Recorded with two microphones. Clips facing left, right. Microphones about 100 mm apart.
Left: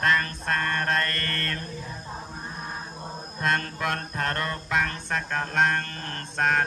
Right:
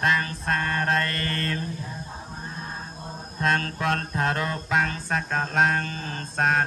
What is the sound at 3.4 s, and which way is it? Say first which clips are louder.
Mantra: right 2 dB; centre (ahead or behind).